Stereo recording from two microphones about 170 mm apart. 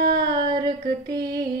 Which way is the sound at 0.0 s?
70° right (ahead or behind).